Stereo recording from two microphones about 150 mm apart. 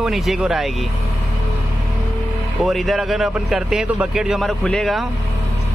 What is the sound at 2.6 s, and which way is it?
Speech, centre (ahead or behind).